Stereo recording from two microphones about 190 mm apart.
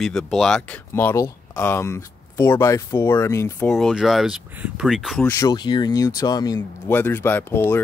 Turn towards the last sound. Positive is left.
turn(degrees=10)  # may be behind; listen again after turning